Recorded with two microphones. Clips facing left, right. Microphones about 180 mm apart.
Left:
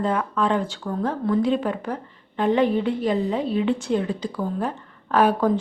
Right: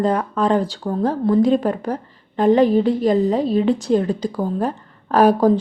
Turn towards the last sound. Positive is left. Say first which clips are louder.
# right 5 dB
turn(degrees=-40)  # may be behind; listen again after turning